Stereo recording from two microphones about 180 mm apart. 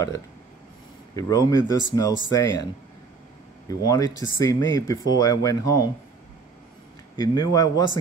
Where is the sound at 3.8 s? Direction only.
20° left (ahead or behind).